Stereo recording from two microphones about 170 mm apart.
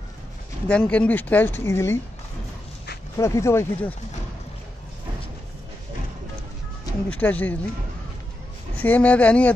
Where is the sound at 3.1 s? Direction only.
15° left (ahead or behind).